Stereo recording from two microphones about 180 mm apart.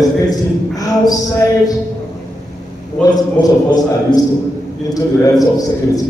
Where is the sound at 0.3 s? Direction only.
20° left (ahead or behind).